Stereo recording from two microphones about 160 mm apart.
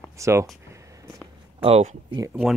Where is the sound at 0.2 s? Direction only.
15° right (ahead or behind).